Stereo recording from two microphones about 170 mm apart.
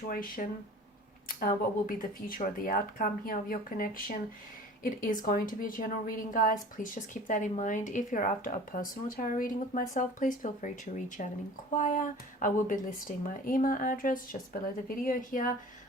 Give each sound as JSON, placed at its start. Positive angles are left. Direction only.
{"t": 0.1, "sound": "a woman's voice", "side_deg": 55}